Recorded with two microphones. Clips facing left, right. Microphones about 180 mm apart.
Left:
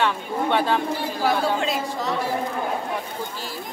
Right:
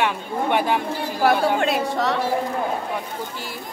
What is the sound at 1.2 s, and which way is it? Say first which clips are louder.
A woman's voice: right 4 dB; 60° right (ahead or behind).